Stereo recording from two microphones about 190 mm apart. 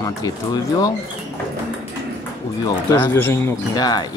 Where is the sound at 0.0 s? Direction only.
20° left (ahead or behind).